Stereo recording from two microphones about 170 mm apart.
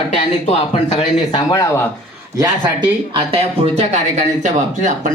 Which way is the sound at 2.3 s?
30° right (ahead or behind).